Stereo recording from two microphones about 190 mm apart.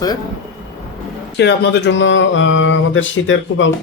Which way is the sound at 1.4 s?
60° left (ahead or behind).